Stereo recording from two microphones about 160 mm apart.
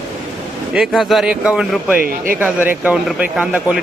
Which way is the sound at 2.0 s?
60° right (ahead or behind).